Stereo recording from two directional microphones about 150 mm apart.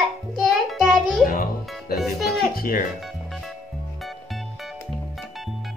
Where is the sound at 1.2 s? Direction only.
75° left (ahead or behind).